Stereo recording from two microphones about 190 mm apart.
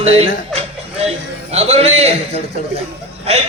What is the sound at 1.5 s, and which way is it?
Speech, 35° right (ahead or behind).